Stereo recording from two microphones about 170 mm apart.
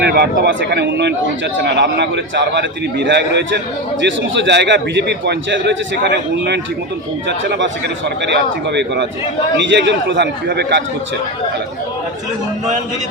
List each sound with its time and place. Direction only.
0.0 s a man's voice: 75° right (ahead or behind)